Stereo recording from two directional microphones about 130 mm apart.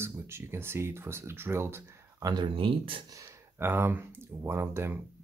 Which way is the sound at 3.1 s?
25° right (ahead or behind).